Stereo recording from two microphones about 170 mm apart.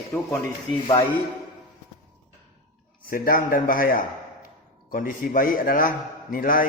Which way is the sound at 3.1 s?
55° left (ahead or behind).